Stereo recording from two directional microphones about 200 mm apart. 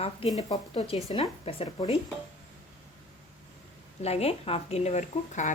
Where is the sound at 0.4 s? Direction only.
25° left (ahead or behind).